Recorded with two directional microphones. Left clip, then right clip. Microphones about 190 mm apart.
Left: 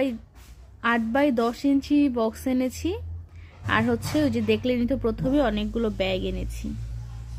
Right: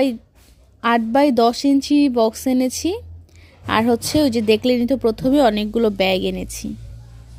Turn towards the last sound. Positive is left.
turn(degrees=-40)  # may be behind; listen again after turning